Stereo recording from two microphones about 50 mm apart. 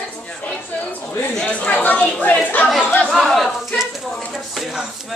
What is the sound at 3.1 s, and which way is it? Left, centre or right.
Speech, centre.